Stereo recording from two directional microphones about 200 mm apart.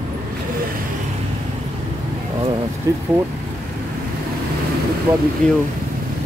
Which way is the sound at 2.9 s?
15° right (ahead or behind).